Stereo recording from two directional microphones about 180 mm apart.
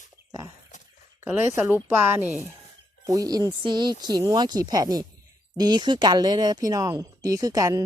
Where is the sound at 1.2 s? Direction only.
10° right (ahead or behind).